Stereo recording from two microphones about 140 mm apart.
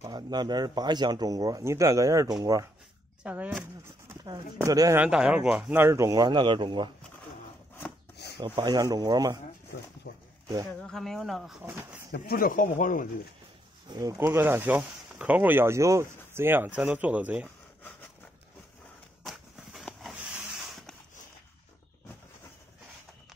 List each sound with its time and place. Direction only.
0.0 s speech: 30° right (ahead or behind)
3.3 s speech: 10° right (ahead or behind)
4.6 s speech: 25° right (ahead or behind)
5.0 s speech: 5° right (ahead or behind); by 6.9 s 35° right (ahead or behind)
8.5 s speech: 20° right (ahead or behind)
10.8 s speech: 5° left (ahead or behind)
11.6 s speech: 15° right (ahead or behind)
12.3 s speech: 85° left
13.8 s speech: 25° right (ahead or behind)
19.2 s a sound: centre (ahead or behind)